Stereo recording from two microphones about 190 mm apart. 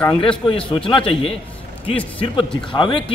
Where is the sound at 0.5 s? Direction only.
30° left (ahead or behind).